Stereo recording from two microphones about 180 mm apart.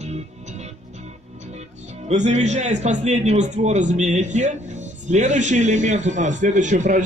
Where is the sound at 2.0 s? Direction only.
40° right (ahead or behind).